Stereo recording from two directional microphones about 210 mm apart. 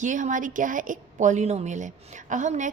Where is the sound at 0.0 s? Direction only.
35° right (ahead or behind).